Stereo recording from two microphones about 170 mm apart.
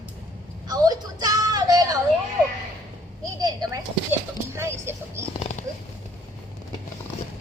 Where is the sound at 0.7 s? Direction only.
20° right (ahead or behind).